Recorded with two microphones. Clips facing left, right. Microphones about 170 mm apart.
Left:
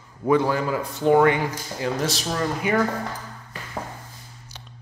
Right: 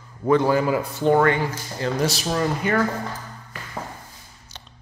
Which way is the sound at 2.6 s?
10° left (ahead or behind).